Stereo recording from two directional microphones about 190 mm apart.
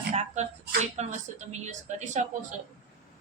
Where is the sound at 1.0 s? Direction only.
35° right (ahead or behind).